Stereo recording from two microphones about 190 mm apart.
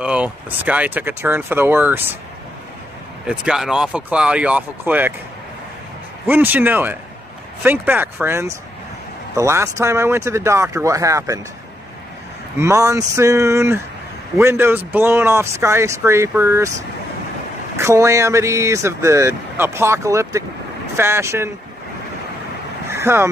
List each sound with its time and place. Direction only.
0.0 s speech: 5° right (ahead or behind)
3.3 s speech: 5° right (ahead or behind)
6.2 s speech: 10° right (ahead or behind)
12.5 s speech: 15° right (ahead or behind)
17.7 s speech: 15° right (ahead or behind)
22.8 s vehicle: 15° right (ahead or behind)